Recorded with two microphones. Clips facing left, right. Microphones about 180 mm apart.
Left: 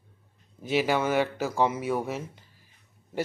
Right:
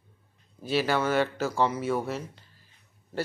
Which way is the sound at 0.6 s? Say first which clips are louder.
Left 1 dB; 15° left (ahead or behind).